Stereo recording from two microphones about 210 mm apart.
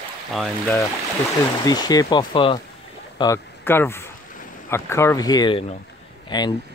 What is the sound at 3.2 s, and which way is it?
Speech, 10° left (ahead or behind).